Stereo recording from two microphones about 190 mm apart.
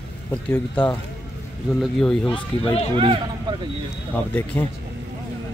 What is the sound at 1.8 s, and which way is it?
Speech, centre (ahead or behind).